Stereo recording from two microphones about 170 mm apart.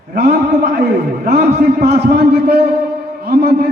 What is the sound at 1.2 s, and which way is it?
A man's voice, 70° right (ahead or behind).